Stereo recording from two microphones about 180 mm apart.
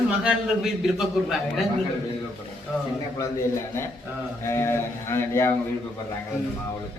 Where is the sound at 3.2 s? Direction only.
15° left (ahead or behind).